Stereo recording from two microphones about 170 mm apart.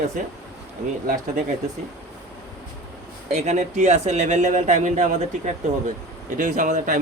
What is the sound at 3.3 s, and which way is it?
Speech, 40° right (ahead or behind).